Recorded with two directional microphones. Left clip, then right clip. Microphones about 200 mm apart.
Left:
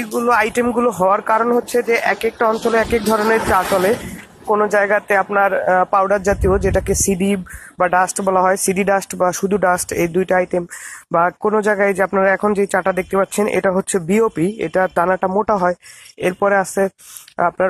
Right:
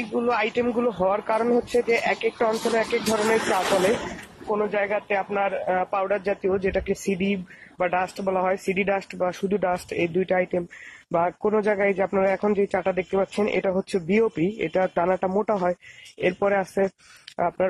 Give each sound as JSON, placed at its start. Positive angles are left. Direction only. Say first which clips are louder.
{"t": 0.3, "sound": "speech", "louder": "left 9 dB", "side_deg": 15}
{"t": 1.4, "sound": "speech", "louder": "left 6 dB", "side_deg": 0}
{"t": 2.8, "sound": "speech", "louder": "left 7 dB", "side_deg": 15}